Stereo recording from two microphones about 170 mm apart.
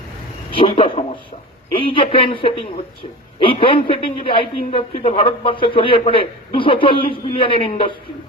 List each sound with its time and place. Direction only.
0.5 s a woman's voice: 30° left (ahead or behind)